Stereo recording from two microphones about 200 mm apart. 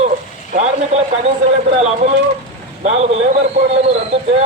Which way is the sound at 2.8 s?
35° right (ahead or behind).